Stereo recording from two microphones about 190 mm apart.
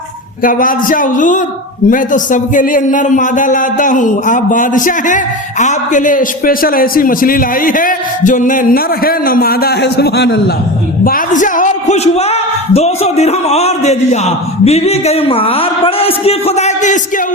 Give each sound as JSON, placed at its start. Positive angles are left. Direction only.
{"t": 0.4, "sound": "a man's voice", "side_deg": 45}
{"t": 11.0, "sound": "a man's voice", "side_deg": 45}